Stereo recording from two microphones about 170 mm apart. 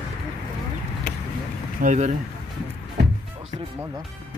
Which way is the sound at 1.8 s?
45° right (ahead or behind).